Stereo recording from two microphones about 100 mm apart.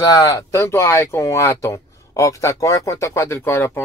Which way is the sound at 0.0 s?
40° left (ahead or behind).